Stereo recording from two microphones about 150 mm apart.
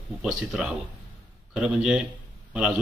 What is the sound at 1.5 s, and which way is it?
A man's voice, 5° right (ahead or behind).